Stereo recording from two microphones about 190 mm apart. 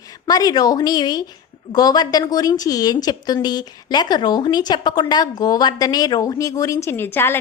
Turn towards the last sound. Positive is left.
turn(degrees=10)  # may be behind; listen again after turning